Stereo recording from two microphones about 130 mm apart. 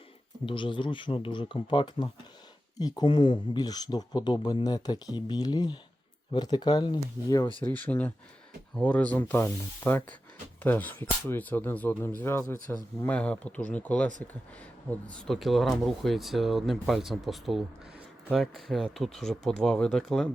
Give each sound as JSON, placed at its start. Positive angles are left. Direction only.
{"t": 0.4, "sound": "speech", "side_deg": 40}
{"t": 7.6, "sound": "speech", "side_deg": 15}
{"t": 15.2, "sound": "speech", "side_deg": 0}